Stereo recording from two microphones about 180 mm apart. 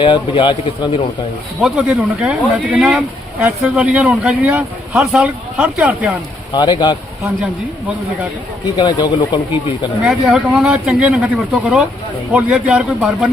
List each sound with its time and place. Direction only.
0.0 s speech: 30° left (ahead or behind)
1.6 s speech: 5° right (ahead or behind)
6.5 s speech: 25° left (ahead or behind)
8.6 s speech: 25° left (ahead or behind)
10.0 s speech: 5° right (ahead or behind)